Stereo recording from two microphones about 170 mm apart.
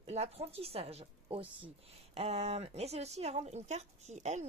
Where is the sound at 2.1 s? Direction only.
35° right (ahead or behind).